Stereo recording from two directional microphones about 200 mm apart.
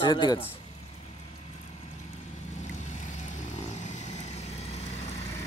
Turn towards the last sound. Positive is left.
turn(degrees=35)  # may be behind; listen again after turning